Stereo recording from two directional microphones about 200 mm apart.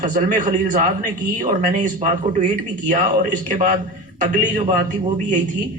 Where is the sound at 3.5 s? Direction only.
40° right (ahead or behind).